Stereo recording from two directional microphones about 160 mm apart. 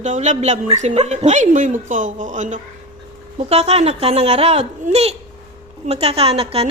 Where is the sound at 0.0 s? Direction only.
50° right (ahead or behind).